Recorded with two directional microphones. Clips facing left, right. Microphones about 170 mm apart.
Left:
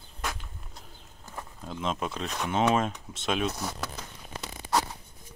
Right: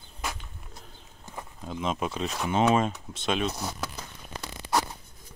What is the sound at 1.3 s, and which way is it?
Speech, 5° right (ahead or behind).